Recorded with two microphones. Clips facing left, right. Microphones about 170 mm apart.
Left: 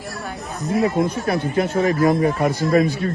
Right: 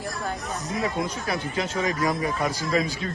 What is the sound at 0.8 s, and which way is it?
Speech, 45° left (ahead or behind).